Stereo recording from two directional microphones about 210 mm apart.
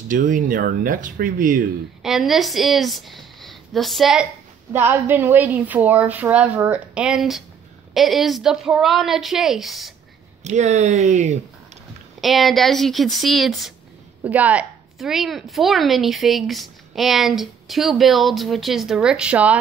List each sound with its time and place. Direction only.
0.1 s speech: 40° right (ahead or behind)
2.0 s a woman's voice: centre (ahead or behind)
10.4 s speech: 35° right (ahead or behind)
12.2 s a woman's voice: centre (ahead or behind)